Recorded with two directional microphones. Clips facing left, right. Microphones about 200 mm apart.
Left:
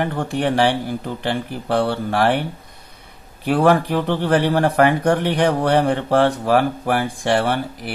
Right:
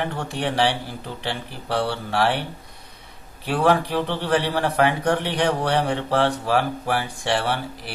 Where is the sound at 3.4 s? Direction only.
50° left (ahead or behind).